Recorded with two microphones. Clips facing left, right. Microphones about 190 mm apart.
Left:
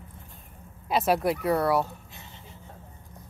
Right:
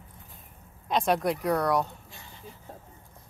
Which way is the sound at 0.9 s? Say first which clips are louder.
Left 1 dB; 5° left (ahead or behind).